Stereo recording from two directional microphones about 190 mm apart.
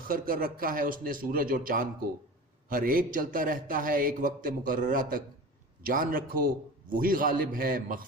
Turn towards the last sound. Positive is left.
turn(degrees=-45)  # may be behind; listen again after turning